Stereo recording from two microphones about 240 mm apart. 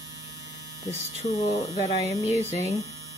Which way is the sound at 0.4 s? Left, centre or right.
Right.